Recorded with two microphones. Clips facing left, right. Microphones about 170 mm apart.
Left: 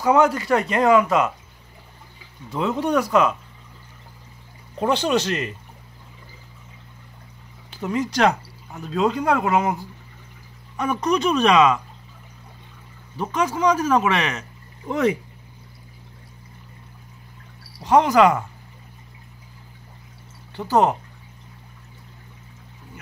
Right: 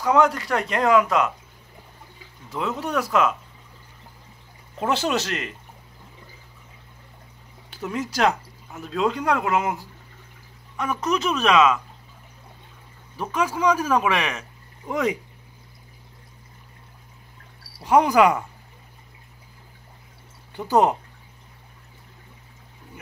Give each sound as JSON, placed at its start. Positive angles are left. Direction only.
{"t": 0.0, "sound": "speech", "side_deg": 0}
{"t": 2.5, "sound": "speech", "side_deg": 0}
{"t": 4.7, "sound": "speech", "side_deg": -5}
{"t": 7.7, "sound": "speech", "side_deg": 0}
{"t": 13.2, "sound": "speech", "side_deg": -10}
{"t": 17.7, "sound": "speech", "side_deg": -10}
{"t": 20.5, "sound": "speech", "side_deg": -15}